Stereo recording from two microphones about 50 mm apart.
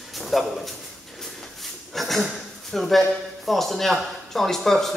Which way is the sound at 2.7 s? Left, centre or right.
Centre.